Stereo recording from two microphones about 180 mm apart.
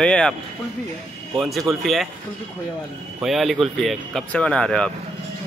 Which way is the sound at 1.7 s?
Centre (ahead or behind).